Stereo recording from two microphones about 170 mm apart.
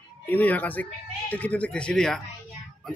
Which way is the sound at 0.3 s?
10° left (ahead or behind).